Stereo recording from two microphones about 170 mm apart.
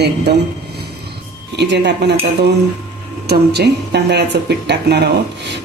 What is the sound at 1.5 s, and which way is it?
A woman's voice, 90° right.